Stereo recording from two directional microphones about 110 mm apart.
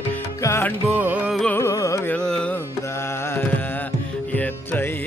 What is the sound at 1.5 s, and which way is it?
Carnatic music, 25° left (ahead or behind).